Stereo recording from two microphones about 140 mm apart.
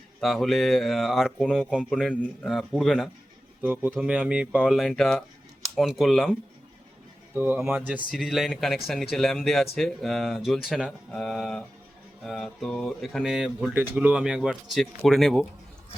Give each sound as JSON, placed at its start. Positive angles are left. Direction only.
{"t": 0.2, "sound": "speech", "side_deg": 0}
{"t": 3.6, "sound": "speech", "side_deg": -15}
{"t": 7.3, "sound": "speech", "side_deg": -15}
{"t": 8.1, "sound": "speech", "side_deg": -5}